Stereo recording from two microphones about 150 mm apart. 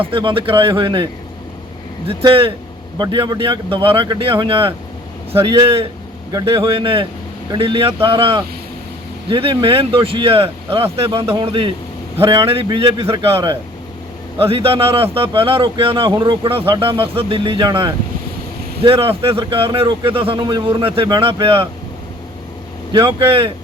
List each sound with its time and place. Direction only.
0.0 s speech: 35° right (ahead or behind)
22.9 s speech: 30° right (ahead or behind)